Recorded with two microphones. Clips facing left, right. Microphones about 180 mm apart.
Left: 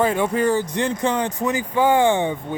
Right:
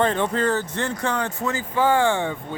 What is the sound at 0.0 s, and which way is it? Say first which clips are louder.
Speech: left 2 dB; 10° left (ahead or behind).